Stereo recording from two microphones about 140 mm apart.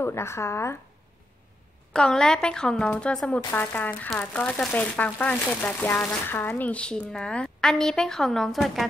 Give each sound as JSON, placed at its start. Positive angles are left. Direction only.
{"t": 0.0, "sound": "speech", "side_deg": 20}
{"t": 2.0, "sound": "speech", "side_deg": 5}